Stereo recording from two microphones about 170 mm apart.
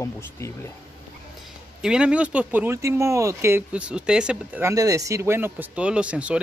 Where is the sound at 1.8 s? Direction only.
5° right (ahead or behind).